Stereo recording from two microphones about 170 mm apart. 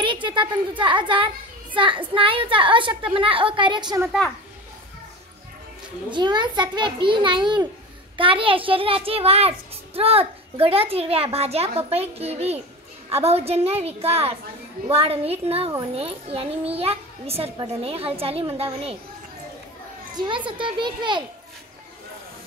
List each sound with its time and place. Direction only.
0.0 s a woman's voice: 30° right (ahead or behind)
6.0 s a woman's voice: 25° right (ahead or behind)
20.2 s a woman's voice: 30° right (ahead or behind)